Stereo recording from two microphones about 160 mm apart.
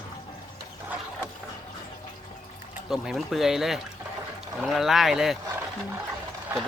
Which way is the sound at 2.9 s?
Centre (ahead or behind).